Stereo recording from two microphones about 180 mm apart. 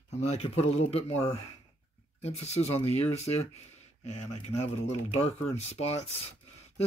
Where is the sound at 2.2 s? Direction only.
35° left (ahead or behind).